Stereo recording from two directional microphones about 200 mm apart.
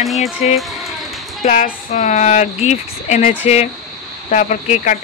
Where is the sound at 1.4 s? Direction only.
35° left (ahead or behind).